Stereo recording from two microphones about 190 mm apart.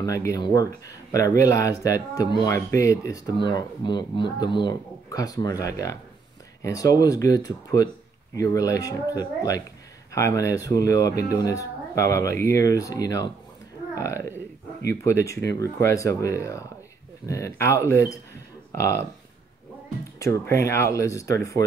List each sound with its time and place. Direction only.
0.0 s speech: 15° left (ahead or behind)
20.2 s speech: 15° left (ahead or behind)